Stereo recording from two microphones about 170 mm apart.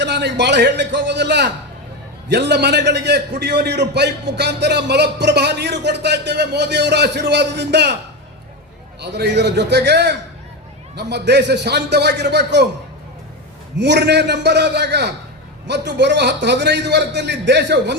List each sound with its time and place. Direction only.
0.0 s a man's voice: 80° right
9.0 s a man's voice: 85° right
13.7 s a man's voice: 90° right